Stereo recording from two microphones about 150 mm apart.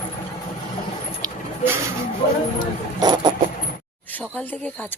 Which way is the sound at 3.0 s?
30° right (ahead or behind).